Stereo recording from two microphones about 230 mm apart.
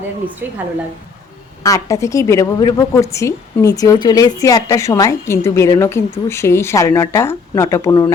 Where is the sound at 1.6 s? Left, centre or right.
Centre.